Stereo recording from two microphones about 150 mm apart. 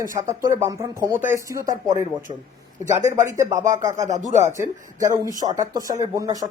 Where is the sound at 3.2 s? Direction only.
20° right (ahead or behind).